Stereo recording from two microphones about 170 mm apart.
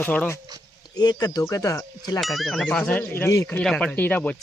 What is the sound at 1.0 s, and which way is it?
Speech, 25° left (ahead or behind).